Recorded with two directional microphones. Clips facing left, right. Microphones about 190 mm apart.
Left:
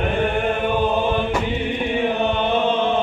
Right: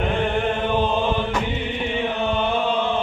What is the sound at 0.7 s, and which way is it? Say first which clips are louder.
Chant: left 2 dB; 15° left (ahead or behind).